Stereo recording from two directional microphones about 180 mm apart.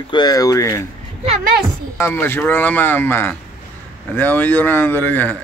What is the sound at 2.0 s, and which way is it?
Speech, 15° left (ahead or behind).